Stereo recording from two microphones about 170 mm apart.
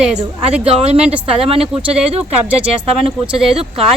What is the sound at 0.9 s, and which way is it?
Speech, 40° right (ahead or behind).